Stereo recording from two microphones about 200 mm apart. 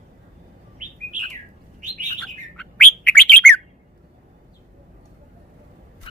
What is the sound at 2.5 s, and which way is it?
Bird, 5° left (ahead or behind).